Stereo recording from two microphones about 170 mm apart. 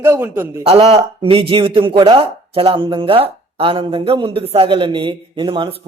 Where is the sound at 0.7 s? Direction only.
35° right (ahead or behind).